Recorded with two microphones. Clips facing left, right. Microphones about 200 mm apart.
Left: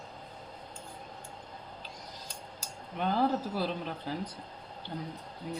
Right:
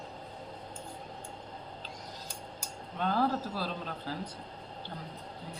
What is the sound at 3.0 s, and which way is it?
Speech, 15° left (ahead or behind).